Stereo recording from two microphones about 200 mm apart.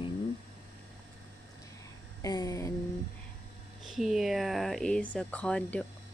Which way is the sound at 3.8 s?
Centre (ahead or behind).